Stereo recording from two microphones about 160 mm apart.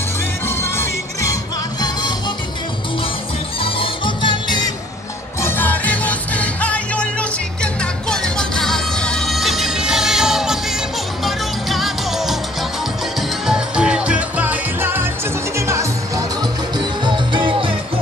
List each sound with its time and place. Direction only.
0.5 s music: 15° left (ahead or behind)
3.6 s music: 35° left (ahead or behind)
5.4 s music: 10° left (ahead or behind)
13.5 s music: 5° right (ahead or behind)
16.7 s music: 30° right (ahead or behind)